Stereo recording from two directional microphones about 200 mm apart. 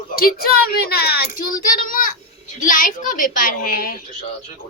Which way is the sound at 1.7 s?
45° left (ahead or behind).